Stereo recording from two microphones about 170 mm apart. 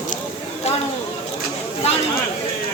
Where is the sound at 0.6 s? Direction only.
40° left (ahead or behind).